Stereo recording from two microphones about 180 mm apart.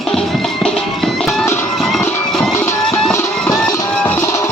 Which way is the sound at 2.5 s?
15° left (ahead or behind).